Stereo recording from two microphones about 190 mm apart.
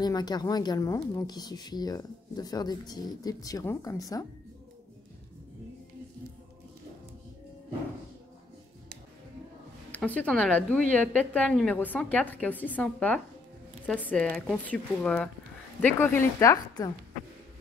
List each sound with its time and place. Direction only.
0.0 s a woman's voice: 20° left (ahead or behind)
9.8 s a woman's voice: 10° left (ahead or behind)